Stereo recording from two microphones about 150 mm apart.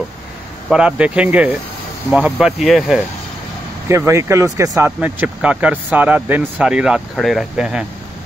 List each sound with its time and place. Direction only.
0.7 s speech: 5° right (ahead or behind)
3.9 s speech: 20° right (ahead or behind)